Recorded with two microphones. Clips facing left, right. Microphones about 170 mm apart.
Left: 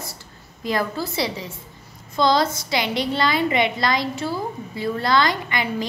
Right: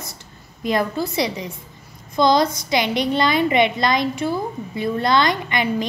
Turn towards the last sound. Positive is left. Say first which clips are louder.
# right 3 dB
turn(degrees=-20)  # may be behind; listen again after turning